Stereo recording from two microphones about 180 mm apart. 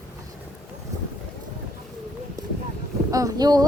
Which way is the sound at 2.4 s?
20° right (ahead or behind).